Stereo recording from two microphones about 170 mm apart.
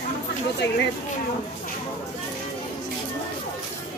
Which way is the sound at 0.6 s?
90° left.